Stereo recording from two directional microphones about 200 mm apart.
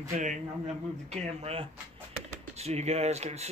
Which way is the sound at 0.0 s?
40° right (ahead or behind).